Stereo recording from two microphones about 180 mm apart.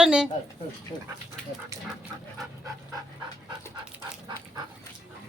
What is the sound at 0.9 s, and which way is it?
Speech, 25° left (ahead or behind).